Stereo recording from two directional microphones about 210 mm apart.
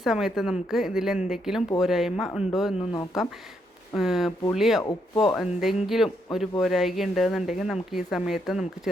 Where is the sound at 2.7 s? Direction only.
20° left (ahead or behind).